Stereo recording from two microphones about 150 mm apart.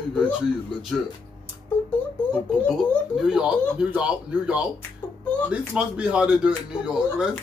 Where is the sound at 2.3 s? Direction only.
5° left (ahead or behind).